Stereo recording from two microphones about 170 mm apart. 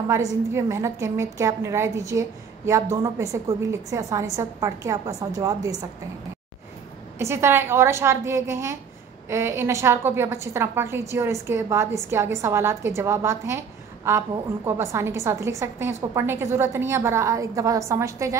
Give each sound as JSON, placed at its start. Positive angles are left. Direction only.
{"t": 0.1, "sound": "a woman's voice", "side_deg": -15}
{"t": 7.2, "sound": "a woman's voice", "side_deg": -15}